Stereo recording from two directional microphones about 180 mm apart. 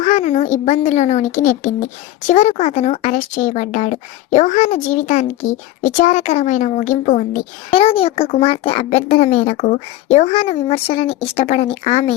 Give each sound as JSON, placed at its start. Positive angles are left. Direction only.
{"t": 0.0, "sound": "a child's voice", "side_deg": 40}
{"t": 7.7, "sound": "a child's voice", "side_deg": 30}